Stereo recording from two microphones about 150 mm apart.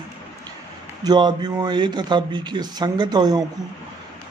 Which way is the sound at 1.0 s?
30° right (ahead or behind).